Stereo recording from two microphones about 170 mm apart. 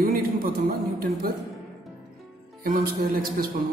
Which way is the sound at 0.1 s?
60° right (ahead or behind).